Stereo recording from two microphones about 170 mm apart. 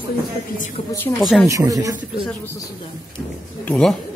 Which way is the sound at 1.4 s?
20° right (ahead or behind).